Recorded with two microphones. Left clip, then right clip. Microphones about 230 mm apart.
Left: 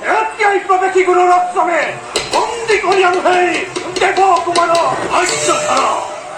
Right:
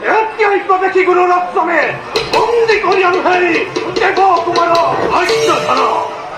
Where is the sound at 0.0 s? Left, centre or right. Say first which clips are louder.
Right 1 dB; left.